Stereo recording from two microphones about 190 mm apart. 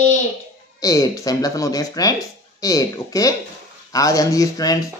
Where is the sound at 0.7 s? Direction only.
20° left (ahead or behind).